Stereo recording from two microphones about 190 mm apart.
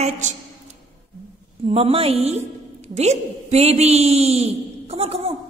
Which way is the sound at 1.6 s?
30° right (ahead or behind).